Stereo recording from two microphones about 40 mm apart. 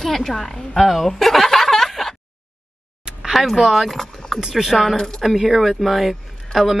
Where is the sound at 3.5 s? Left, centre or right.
Centre.